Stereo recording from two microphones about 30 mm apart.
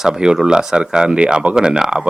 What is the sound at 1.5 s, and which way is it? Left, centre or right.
Speech, right.